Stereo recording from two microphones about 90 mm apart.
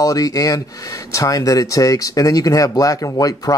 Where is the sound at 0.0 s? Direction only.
40° left (ahead or behind).